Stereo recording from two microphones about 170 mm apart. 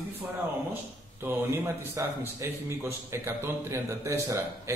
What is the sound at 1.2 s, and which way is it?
A man's voice, 10° right (ahead or behind).